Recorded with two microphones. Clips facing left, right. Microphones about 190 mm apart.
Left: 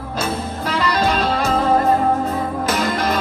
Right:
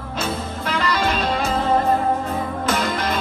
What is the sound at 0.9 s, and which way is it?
Music, 40° left (ahead or behind).